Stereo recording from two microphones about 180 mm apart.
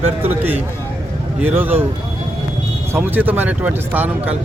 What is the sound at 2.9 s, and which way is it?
Speech, 10° right (ahead or behind).